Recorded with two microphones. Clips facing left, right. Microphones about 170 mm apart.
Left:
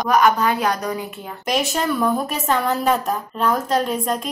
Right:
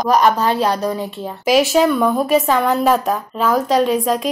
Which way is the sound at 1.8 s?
90° right.